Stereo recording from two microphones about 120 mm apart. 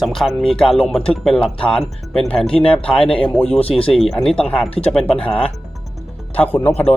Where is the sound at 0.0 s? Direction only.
Centre (ahead or behind).